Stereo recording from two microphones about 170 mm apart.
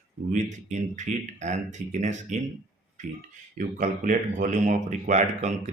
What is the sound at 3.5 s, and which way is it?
Speech, 50° right (ahead or behind).